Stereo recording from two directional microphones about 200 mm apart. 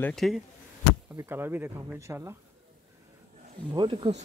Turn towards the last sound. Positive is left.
turn(degrees=-25)  # may be behind; listen again after turning